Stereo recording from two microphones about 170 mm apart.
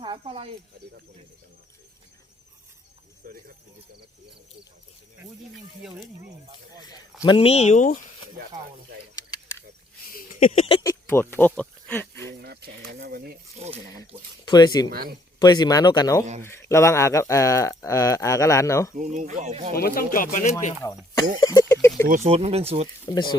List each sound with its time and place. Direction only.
0.0 s speech: 30° right (ahead or behind)
3.2 s speech: 55° right (ahead or behind)
6.8 s speech: 25° left (ahead or behind); by 7.9 s 45° left (ahead or behind)
9.1 s a sound: 20° left (ahead or behind)
10.4 s speech: 40° left (ahead or behind)
10.8 s speech: 15° left (ahead or behind)
12.4 s speech: 65° right (ahead or behind)
14.4 s speech: 25° left (ahead or behind)
18.9 s speech: 45° right (ahead or behind)
19.7 s speech: 60° left (ahead or behind)
21.4 s speech: 20° left (ahead or behind)
22.0 s speech: 50° right (ahead or behind)
22.3 s speech: 35° right (ahead or behind)
23.0 s speech: 25° left (ahead or behind)